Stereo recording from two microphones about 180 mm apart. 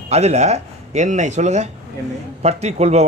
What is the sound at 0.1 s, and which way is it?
A man's voice, 40° right (ahead or behind).